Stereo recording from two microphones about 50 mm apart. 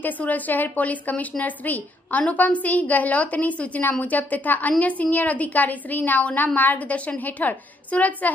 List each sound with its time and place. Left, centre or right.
0.0 s a woman's voice: left